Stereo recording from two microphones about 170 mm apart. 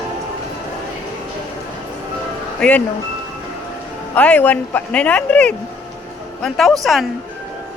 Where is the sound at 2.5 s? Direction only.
5° left (ahead or behind).